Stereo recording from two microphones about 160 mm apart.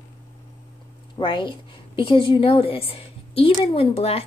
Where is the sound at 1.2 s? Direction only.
30° left (ahead or behind).